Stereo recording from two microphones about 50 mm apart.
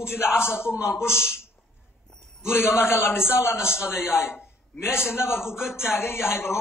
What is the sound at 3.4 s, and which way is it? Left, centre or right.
Speech, centre.